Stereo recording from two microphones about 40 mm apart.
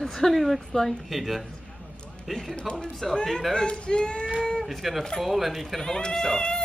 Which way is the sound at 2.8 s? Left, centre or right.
Centre.